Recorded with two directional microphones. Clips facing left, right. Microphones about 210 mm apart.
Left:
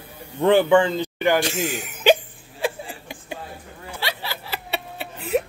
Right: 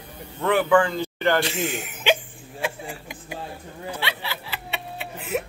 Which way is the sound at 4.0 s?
40° left (ahead or behind).